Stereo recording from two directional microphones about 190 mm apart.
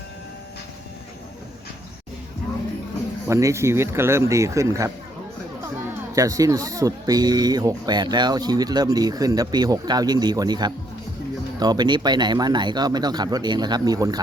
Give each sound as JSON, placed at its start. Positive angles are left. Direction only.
{"t": 3.2, "sound": "speech", "side_deg": -15}
{"t": 6.1, "sound": "speech", "side_deg": -15}